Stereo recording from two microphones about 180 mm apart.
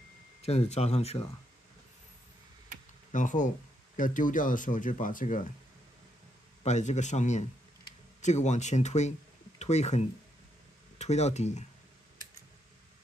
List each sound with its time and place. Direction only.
0.4 s speech: 35° left (ahead or behind)
3.1 s speech: 45° left (ahead or behind)
6.6 s speech: 40° left (ahead or behind)